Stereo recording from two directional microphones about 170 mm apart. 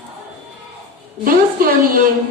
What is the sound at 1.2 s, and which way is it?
Speech, 55° right (ahead or behind).